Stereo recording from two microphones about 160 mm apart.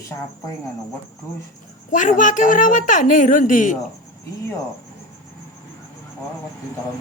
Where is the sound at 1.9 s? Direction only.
55° left (ahead or behind).